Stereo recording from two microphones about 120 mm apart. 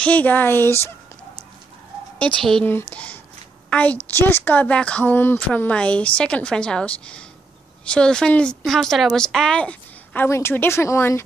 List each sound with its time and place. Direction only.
0.0 s a woman's voice: 10° left (ahead or behind)
2.1 s a woman's voice: 5° left (ahead or behind)
10.2 s speech: 20° left (ahead or behind)